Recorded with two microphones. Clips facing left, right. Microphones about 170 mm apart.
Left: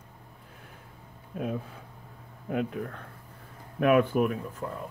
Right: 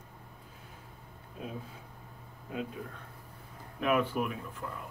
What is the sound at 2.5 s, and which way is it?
Speech, 65° left (ahead or behind).